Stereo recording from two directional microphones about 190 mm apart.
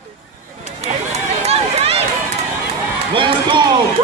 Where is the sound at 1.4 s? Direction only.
30° right (ahead or behind).